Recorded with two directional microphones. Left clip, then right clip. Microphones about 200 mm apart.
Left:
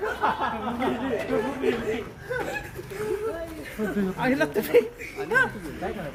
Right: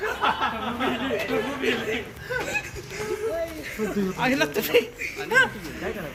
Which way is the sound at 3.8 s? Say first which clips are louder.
Right 1 dB; 5° left (ahead or behind).